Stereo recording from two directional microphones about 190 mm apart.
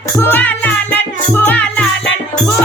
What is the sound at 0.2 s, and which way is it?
Music, 10° left (ahead or behind).